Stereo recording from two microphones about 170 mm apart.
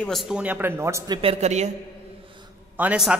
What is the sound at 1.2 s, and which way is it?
Speech, 40° right (ahead or behind).